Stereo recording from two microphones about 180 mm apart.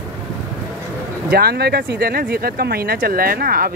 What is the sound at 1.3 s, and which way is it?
Speech, 60° right (ahead or behind).